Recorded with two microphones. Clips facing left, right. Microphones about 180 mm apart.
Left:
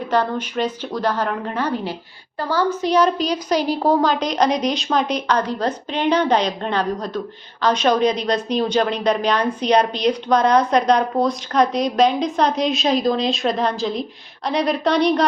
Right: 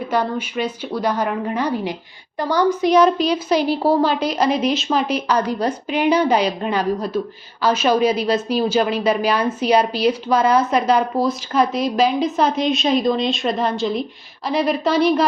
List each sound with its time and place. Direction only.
0.1 s a woman's voice: 10° right (ahead or behind)